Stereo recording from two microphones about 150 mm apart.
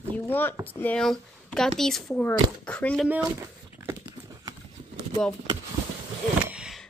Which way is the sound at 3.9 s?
25° right (ahead or behind).